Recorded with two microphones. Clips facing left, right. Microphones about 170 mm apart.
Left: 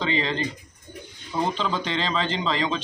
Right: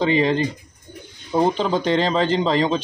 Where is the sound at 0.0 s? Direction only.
45° right (ahead or behind).